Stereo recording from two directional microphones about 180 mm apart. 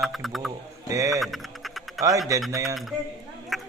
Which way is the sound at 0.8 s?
20° right (ahead or behind).